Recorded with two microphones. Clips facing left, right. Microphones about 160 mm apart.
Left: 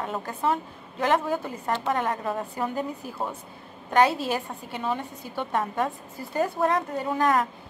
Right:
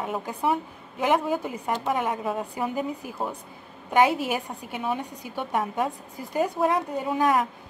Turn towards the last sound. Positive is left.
turn(degrees=-5)  # may be behind; listen again after turning